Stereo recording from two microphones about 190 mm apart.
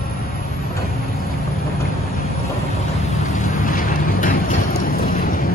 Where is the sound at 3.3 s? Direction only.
45° left (ahead or behind).